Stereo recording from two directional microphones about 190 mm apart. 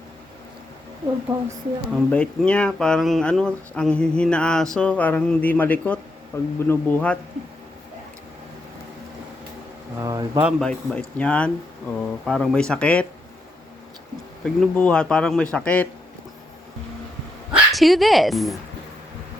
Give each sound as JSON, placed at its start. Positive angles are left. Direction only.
{"t": 1.3, "sound": "a woman's voice", "side_deg": -20}
{"t": 2.0, "sound": "speech", "side_deg": 5}
{"t": 10.0, "sound": "speech", "side_deg": -15}
{"t": 10.4, "sound": "speech", "side_deg": 5}
{"t": 14.4, "sound": "a man's voice", "side_deg": 5}
{"t": 17.5, "sound": "speech", "side_deg": 0}